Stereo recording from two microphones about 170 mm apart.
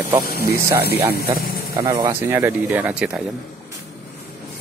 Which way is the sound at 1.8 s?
25° right (ahead or behind).